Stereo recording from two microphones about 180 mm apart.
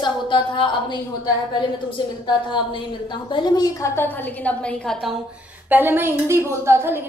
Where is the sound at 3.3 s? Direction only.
25° left (ahead or behind); by 5.1 s 5° left (ahead or behind).